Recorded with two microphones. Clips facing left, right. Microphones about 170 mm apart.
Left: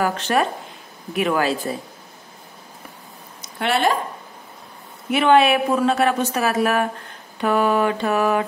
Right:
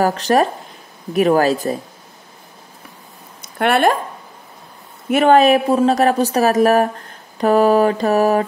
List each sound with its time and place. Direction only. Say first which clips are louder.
0.0 s mantra: right 5 dB; 40° right (ahead or behind)
3.5 s speech: right 5 dB; 55° right (ahead or behind)
5.1 s mantra: right 4 dB; 40° right (ahead or behind)